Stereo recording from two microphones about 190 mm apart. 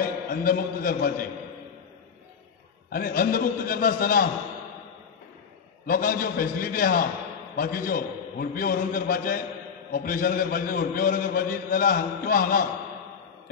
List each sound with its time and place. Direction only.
0.0 s a man's voice: 50° left (ahead or behind)
2.9 s a man's voice: 50° left (ahead or behind)
5.9 s a man's voice: 50° left (ahead or behind)